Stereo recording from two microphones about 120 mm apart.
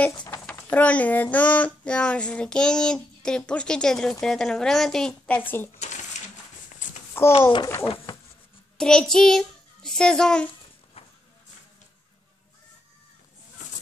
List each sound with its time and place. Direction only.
0.7 s child singing: 10° left (ahead or behind)
5.8 s a sound: 85° left
7.2 s a child's voice: 20° left (ahead or behind)
8.7 s a child's voice: 5° left (ahead or behind)
11.0 s vehicle: 55° left (ahead or behind)
13.6 s a sound: 90° left